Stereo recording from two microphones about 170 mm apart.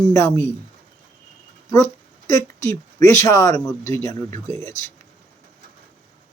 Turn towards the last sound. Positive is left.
turn(degrees=20)  # may be behind; listen again after turning